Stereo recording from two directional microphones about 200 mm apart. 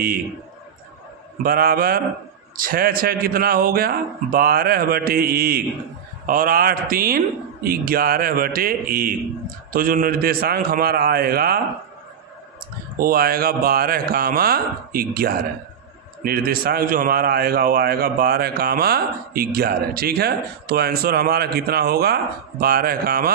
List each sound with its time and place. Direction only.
1.4 s a man's voice: 50° right (ahead or behind)
13.0 s a man's voice: 45° right (ahead or behind)